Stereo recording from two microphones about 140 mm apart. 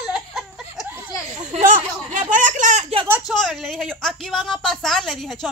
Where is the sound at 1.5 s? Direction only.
65° right (ahead or behind).